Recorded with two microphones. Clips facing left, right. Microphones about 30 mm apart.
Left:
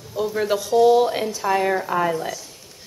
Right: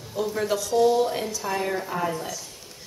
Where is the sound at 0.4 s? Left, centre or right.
Centre.